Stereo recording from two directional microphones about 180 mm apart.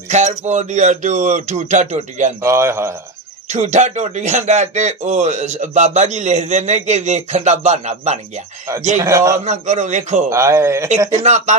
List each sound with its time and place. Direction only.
0.1 s a man's voice: 40° right (ahead or behind)
2.4 s speech: 15° right (ahead or behind)
3.5 s a man's voice: 40° right (ahead or behind)
9.0 s speech: 15° right (ahead or behind)
9.4 s a man's voice: 40° right (ahead or behind)
10.2 s speech: 15° right (ahead or behind)
11.1 s a man's voice: 40° right (ahead or behind)